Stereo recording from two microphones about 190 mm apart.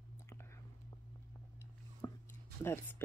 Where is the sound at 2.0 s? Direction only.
20° left (ahead or behind).